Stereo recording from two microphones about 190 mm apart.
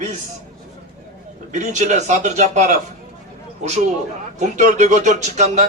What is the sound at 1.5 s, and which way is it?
Speech, 40° right (ahead or behind).